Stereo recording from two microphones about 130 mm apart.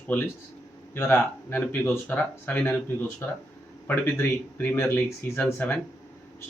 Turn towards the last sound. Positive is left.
turn(degrees=15)  # may be behind; listen again after turning